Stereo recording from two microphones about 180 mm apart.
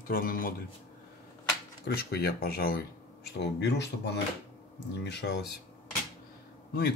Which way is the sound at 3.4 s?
70° left (ahead or behind).